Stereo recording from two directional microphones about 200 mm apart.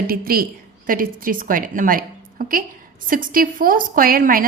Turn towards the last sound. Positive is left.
turn(degrees=-45)  # may be behind; listen again after turning